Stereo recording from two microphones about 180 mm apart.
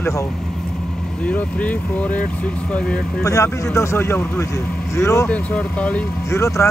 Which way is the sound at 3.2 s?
15° left (ahead or behind).